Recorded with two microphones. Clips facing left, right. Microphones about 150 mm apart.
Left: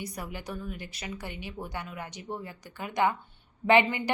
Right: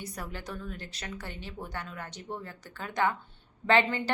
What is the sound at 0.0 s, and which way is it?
A woman's voice, 10° left (ahead or behind).